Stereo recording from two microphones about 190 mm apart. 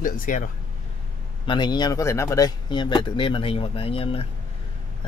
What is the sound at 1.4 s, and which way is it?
Speech, 25° left (ahead or behind).